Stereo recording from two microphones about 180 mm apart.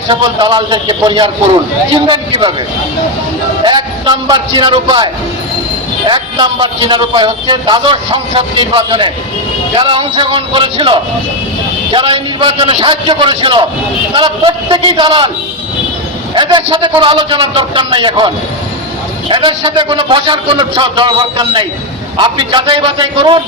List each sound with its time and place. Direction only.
0.1 s speech: 25° right (ahead or behind)
3.6 s speech: 25° right (ahead or behind)
6.1 s speech: 25° right (ahead or behind)
16.3 s speech: 25° right (ahead or behind)
19.3 s speech: 30° right (ahead or behind)